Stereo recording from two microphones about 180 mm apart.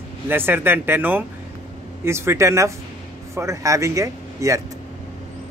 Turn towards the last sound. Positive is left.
turn(degrees=-15)  # may be behind; listen again after turning